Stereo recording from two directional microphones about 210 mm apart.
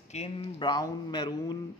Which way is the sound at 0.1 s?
25° left (ahead or behind).